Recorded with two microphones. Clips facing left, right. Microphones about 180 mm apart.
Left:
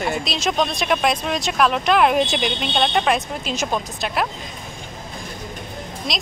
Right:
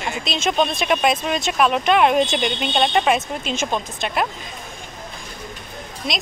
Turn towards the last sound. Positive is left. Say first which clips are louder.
# right 1 dB
turn(degrees=0)  # may be behind; listen again after turning